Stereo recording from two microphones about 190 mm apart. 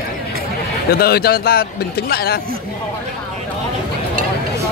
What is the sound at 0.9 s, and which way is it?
Speech, 55° left (ahead or behind).